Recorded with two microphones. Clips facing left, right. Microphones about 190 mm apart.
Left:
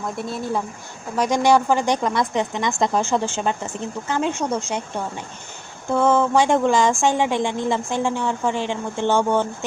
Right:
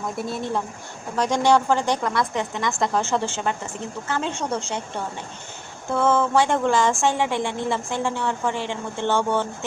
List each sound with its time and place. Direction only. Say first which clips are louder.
0.2 s speech: left 1 dB; centre (ahead or behind)
5.9 s speech: left 2 dB; 15° left (ahead or behind)